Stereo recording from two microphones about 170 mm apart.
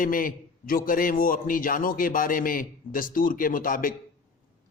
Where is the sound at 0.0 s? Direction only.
55° left (ahead or behind).